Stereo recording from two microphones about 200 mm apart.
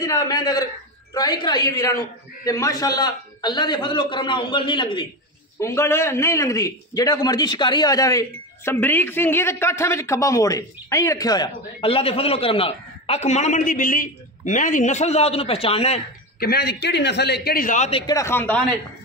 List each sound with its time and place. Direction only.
0.0 s a man's voice: 20° left (ahead or behind)
5.6 s a man's voice: 15° left (ahead or behind); by 16.0 s 30° left (ahead or behind)
16.3 s a man's voice: 50° left (ahead or behind); by 18.0 s 35° left (ahead or behind)
18.0 s speech: 15° left (ahead or behind)